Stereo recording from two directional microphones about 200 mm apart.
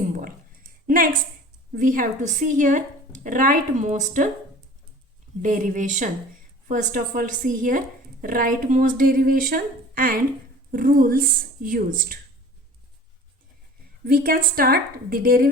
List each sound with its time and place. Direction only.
0.1 s a sound: 45° right (ahead or behind)
1.7 s a woman's voice: 45° right (ahead or behind)
5.4 s a woman's voice: 40° right (ahead or behind)
14.0 s speech: 45° right (ahead or behind)